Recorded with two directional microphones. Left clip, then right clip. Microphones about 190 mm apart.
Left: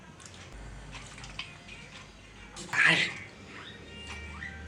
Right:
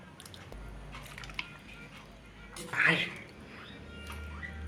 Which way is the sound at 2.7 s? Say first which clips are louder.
Left 4 dB; 25° left (ahead or behind).